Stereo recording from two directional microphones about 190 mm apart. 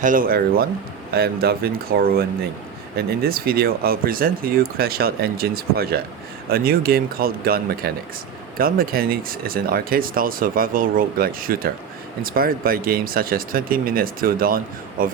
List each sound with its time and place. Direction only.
0.0 s speech: 45° right (ahead or behind)